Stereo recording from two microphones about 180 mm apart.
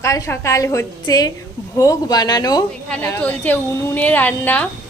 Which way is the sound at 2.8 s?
10° left (ahead or behind).